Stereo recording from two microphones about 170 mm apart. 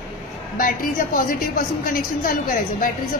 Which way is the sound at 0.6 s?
55° left (ahead or behind).